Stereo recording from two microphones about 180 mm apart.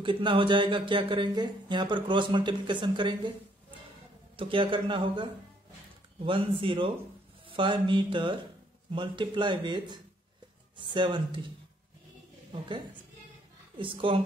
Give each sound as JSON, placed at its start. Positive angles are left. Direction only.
{"t": 0.0, "sound": "speech", "side_deg": -25}
{"t": 4.4, "sound": "speech", "side_deg": -30}
{"t": 13.7, "sound": "speech", "side_deg": -30}